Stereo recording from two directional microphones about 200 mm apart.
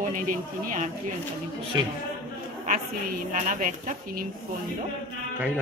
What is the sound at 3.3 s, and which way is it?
Speech, 40° right (ahead or behind).